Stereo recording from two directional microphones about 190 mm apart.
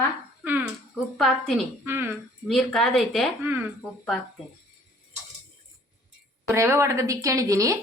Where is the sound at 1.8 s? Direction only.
10° right (ahead or behind).